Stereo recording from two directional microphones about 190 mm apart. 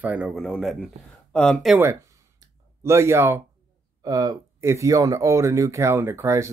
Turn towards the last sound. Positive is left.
turn(degrees=-15)  # may be behind; listen again after turning